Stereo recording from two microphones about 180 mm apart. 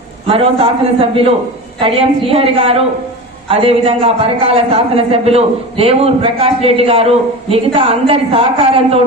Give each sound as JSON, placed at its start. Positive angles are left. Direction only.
{"t": 0.3, "sound": "a man's voice", "side_deg": -30}
{"t": 1.8, "sound": "a man's voice", "side_deg": -30}